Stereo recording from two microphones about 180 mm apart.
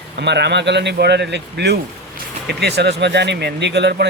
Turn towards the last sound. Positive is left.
turn(degrees=-70)  # may be behind; listen again after turning